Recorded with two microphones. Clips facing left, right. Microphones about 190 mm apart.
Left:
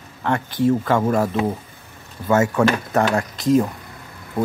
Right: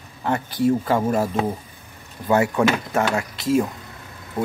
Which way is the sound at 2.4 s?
15° right (ahead or behind).